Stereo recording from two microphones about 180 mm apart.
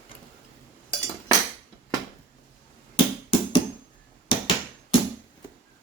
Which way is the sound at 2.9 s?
30° left (ahead or behind).